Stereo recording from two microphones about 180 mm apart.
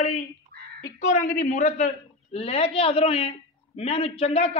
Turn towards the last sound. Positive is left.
turn(degrees=35)  # may be behind; listen again after turning